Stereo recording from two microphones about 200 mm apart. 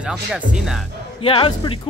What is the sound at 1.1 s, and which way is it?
Speech, 25° left (ahead or behind).